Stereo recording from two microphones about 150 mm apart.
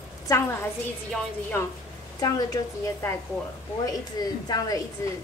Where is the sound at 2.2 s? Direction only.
20° left (ahead or behind).